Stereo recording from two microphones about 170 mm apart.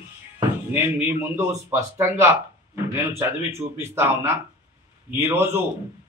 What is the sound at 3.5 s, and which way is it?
A man's voice, 15° right (ahead or behind).